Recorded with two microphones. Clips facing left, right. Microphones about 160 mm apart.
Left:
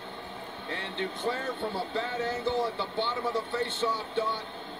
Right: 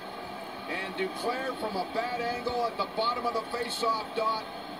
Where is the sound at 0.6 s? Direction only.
10° right (ahead or behind).